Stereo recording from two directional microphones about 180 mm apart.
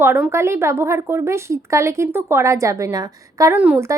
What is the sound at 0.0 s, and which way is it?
Speech, 10° right (ahead or behind).